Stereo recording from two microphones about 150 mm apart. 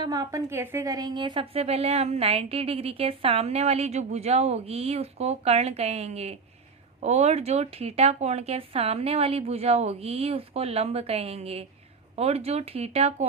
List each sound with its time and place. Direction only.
0.0 s a woman's voice: 25° right (ahead or behind); by 13.2 s 45° right (ahead or behind)